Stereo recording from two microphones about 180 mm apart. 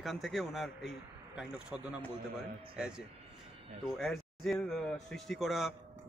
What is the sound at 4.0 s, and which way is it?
A man's voice, centre (ahead or behind).